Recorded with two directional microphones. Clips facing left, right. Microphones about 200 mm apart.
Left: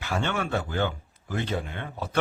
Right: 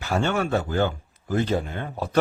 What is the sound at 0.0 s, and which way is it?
Speech, 40° right (ahead or behind).